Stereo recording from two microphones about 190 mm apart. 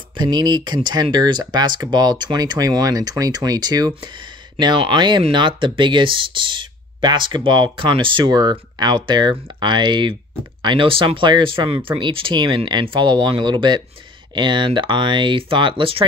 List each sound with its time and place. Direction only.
0.2 s speech: 20° right (ahead or behind)